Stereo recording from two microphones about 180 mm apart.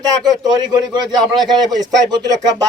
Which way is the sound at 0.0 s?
25° right (ahead or behind).